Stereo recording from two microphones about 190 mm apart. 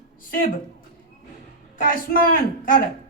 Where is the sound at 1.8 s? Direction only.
50° left (ahead or behind).